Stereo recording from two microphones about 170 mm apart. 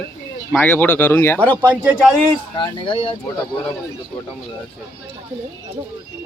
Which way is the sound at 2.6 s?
30° left (ahead or behind).